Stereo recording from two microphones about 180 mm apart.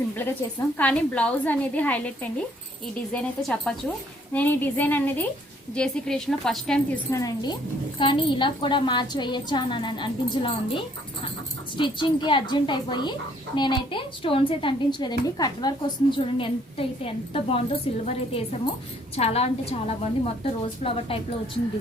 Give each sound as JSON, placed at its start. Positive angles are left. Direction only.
{"t": 0.8, "sound": "a woman's voice", "side_deg": 5}
{"t": 7.1, "sound": "a woman's voice", "side_deg": 20}